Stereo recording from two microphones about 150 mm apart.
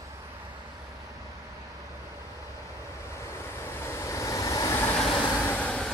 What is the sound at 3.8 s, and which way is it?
Vehicle, 20° left (ahead or behind).